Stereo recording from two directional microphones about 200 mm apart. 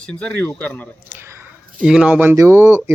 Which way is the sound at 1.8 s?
5° right (ahead or behind).